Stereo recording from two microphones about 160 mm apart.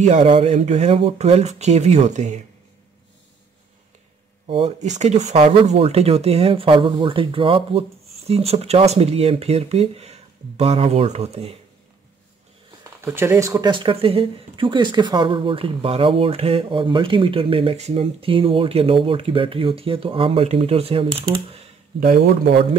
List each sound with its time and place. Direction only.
0.0 s speech: 45° right (ahead or behind)
4.5 s speech: 40° right (ahead or behind)
13.0 s speech: 15° right (ahead or behind); by 21.6 s 35° right (ahead or behind)
22.0 s speech: 75° right (ahead or behind)